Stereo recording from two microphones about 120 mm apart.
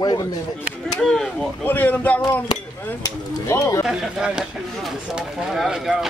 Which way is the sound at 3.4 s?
20° left (ahead or behind).